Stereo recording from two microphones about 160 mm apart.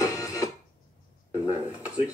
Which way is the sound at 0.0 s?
20° left (ahead or behind).